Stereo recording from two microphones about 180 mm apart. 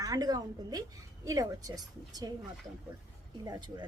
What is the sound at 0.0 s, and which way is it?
A woman's voice, 20° right (ahead or behind).